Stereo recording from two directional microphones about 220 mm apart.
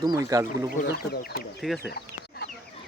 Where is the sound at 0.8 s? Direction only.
45° left (ahead or behind).